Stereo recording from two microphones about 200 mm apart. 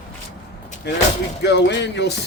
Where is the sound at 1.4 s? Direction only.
60° left (ahead or behind).